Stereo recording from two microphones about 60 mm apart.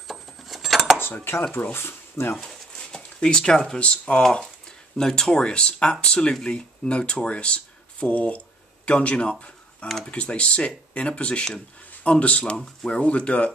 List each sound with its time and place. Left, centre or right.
0.1 s cutlery: centre
0.9 s dishes: left
1.5 s speech: left
2.4 s speech: centre
4.2 s speech: centre